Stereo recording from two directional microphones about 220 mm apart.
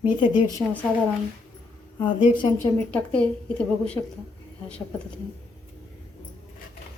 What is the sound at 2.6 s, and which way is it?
Speech, 5° left (ahead or behind).